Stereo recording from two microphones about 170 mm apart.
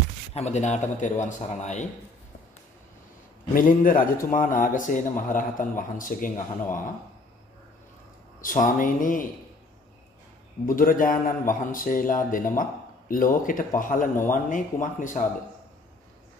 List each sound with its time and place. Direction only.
0.3 s a man's voice: 40° left (ahead or behind)
3.5 s a man's voice: 55° left (ahead or behind)
8.4 s a man's voice: 50° left (ahead or behind)
10.6 s a man's voice: 55° left (ahead or behind)